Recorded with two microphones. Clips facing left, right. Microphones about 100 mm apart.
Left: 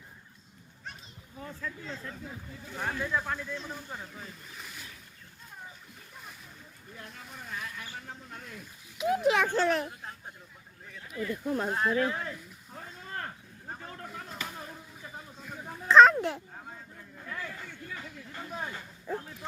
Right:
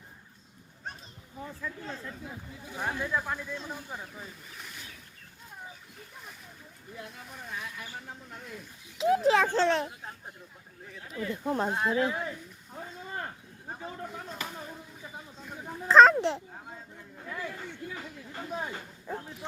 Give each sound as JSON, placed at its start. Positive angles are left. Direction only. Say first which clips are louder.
{"t": 1.4, "sound": "speech", "louder": "right 1 dB", "side_deg": -10}
{"t": 6.9, "sound": "speech", "louder": "right 2 dB", "side_deg": -5}
{"t": 9.0, "sound": "speech", "louder": "right 2 dB", "side_deg": -30}
{"t": 11.1, "sound": "speech", "louder": "even", "side_deg": -30}
{"t": 12.7, "sound": "a sound", "louder": "right 2 dB", "side_deg": -15}
{"t": 14.3, "sound": "speech", "louder": "right 1 dB", "side_deg": -5}
{"t": 15.9, "sound": "a child's voice", "louder": "even", "side_deg": -35}
{"t": 16.6, "sound": "speech", "louder": "right 1 dB", "side_deg": -15}